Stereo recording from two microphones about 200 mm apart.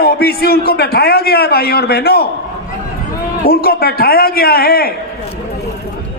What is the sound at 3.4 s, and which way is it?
A man's voice, 50° left (ahead or behind).